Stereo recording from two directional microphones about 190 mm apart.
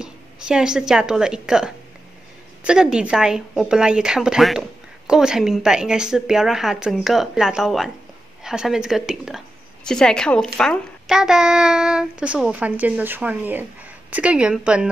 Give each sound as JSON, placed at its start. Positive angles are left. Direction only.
{"t": 0.0, "sound": "a woman's voice", "side_deg": -5}